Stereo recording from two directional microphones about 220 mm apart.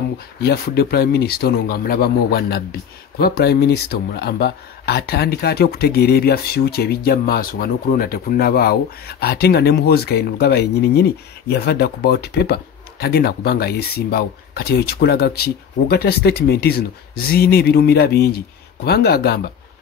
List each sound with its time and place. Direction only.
0.4 s speech: 45° left (ahead or behind)